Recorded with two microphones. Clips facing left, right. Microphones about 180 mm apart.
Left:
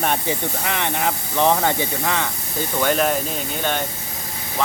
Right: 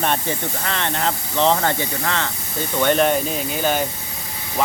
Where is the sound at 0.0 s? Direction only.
15° left (ahead or behind).